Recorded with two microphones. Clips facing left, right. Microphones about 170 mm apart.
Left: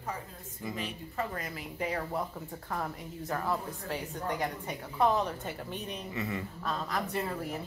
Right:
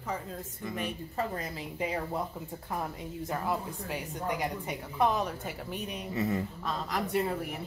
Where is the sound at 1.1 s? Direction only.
30° right (ahead or behind); by 5.8 s 10° right (ahead or behind).